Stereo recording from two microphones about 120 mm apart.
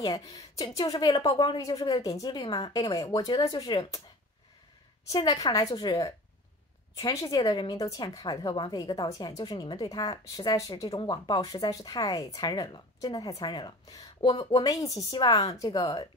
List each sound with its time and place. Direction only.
0.0 s a woman's voice: 30° left (ahead or behind)
5.1 s a woman's voice: 30° left (ahead or behind)